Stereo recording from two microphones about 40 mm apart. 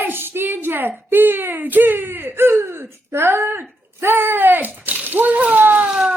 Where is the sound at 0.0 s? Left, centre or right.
Right.